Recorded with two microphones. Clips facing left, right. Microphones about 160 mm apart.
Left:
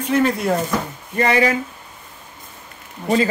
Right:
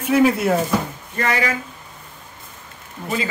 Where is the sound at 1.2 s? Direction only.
25° left (ahead or behind).